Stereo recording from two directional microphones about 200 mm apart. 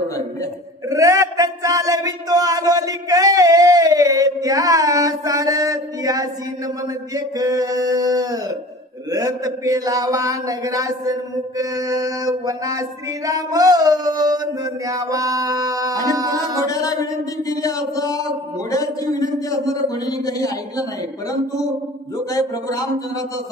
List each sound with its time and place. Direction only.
0.8 s a sound: 15° right (ahead or behind)
9.1 s a man's voice: 15° right (ahead or behind)
16.6 s a man's voice: 15° left (ahead or behind)
22.3 s a man's voice: 15° left (ahead or behind)